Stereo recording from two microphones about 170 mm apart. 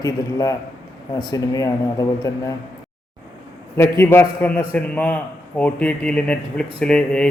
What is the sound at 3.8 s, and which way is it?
A man's voice, 15° left (ahead or behind).